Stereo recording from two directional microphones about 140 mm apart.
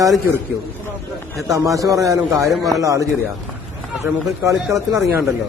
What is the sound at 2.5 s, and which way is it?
Speech, centre (ahead or behind).